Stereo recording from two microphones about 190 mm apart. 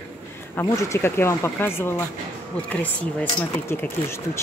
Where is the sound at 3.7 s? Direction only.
15° left (ahead or behind).